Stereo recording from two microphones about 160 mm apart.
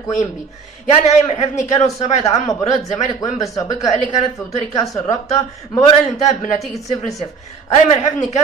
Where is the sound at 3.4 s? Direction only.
20° left (ahead or behind).